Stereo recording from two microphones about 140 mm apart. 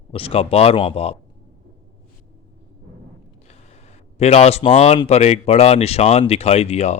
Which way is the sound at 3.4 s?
50° left (ahead or behind).